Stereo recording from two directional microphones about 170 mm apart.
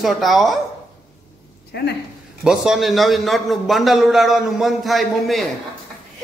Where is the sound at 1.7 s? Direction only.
90° left.